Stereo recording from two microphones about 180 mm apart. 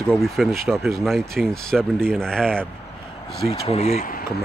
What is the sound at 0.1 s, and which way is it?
Speech, centre (ahead or behind).